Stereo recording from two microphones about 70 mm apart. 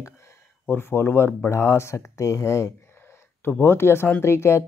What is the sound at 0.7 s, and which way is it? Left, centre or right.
Speech, left.